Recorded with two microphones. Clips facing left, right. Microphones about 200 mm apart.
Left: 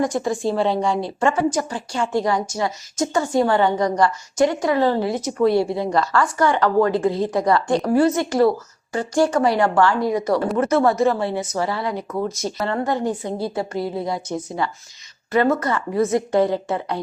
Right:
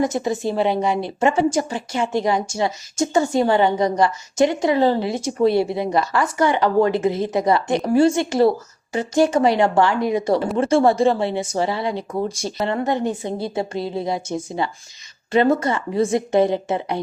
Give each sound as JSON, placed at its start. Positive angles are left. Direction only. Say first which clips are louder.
{"t": 0.0, "sound": "a woman's voice", "louder": "even", "side_deg": -20}